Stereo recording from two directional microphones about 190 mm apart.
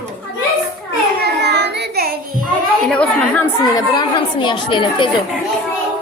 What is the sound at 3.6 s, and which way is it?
Speech, 20° left (ahead or behind).